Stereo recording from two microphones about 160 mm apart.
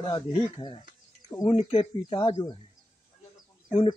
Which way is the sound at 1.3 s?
30° left (ahead or behind).